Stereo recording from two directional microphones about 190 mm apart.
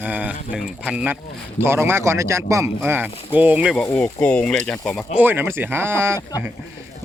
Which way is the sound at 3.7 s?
5° left (ahead or behind).